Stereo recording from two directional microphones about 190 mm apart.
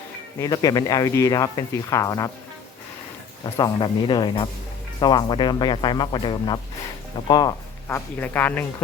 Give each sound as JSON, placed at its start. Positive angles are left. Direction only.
{"t": 0.3, "sound": "speech", "side_deg": 20}
{"t": 3.4, "sound": "speech", "side_deg": 20}